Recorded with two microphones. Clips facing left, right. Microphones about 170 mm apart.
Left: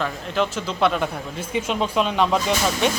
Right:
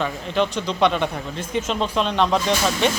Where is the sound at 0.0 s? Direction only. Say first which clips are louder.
Right 1 dB; 5° left (ahead or behind).